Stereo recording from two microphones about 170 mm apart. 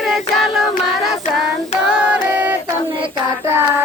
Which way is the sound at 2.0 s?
10° right (ahead or behind).